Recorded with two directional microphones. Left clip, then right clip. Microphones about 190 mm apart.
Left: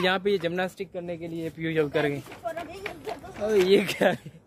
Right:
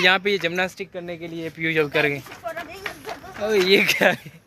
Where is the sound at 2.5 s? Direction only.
5° right (ahead or behind).